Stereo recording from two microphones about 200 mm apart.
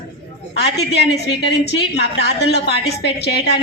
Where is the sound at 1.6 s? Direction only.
55° left (ahead or behind).